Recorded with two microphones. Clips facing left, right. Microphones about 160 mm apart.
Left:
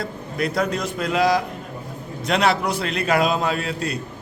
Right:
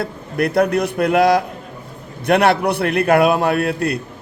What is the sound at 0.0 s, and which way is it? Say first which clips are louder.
A man's voice: right 5 dB; 60° right (ahead or behind).